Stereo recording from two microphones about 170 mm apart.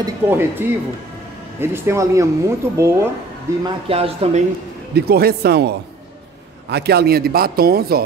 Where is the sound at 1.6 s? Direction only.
15° right (ahead or behind).